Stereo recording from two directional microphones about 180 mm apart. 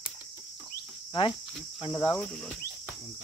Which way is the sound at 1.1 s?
30° left (ahead or behind).